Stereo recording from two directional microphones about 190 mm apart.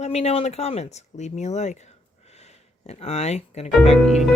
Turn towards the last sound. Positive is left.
turn(degrees=35)  # may be behind; listen again after turning